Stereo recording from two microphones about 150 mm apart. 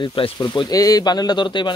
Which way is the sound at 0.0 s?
35° left (ahead or behind).